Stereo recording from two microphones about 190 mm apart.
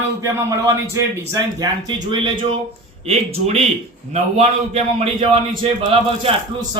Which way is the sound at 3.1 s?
30° right (ahead or behind).